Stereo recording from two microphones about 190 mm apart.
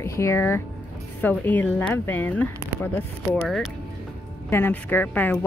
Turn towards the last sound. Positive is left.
turn(degrees=10)  # may be behind; listen again after turning